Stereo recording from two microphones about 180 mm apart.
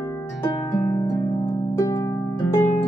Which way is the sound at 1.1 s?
15° left (ahead or behind).